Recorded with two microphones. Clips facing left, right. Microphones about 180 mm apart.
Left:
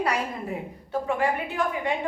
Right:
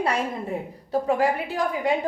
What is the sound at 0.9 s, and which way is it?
A woman's voice, 40° right (ahead or behind).